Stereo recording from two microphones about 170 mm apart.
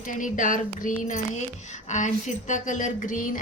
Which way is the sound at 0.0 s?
50° left (ahead or behind).